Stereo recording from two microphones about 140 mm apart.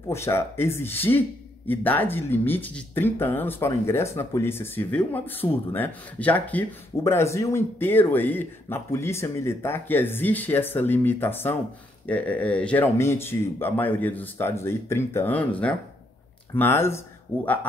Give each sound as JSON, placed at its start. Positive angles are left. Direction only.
{"t": 0.1, "sound": "speech", "side_deg": 20}